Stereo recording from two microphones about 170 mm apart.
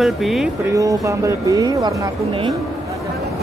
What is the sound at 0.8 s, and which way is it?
Speech, 20° right (ahead or behind).